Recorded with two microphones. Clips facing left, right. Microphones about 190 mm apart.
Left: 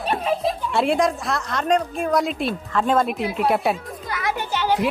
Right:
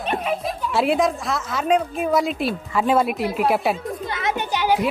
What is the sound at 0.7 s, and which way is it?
A woman's voice, centre (ahead or behind).